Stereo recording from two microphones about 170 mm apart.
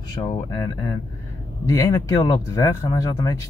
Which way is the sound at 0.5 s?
20° left (ahead or behind).